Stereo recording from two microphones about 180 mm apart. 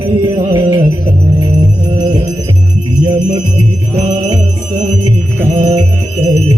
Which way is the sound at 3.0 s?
30° right (ahead or behind).